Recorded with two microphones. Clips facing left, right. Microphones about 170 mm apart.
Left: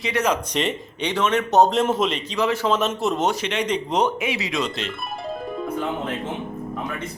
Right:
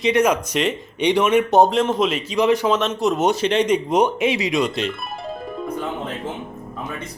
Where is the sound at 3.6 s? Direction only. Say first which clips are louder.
Right 1 dB; 10° right (ahead or behind).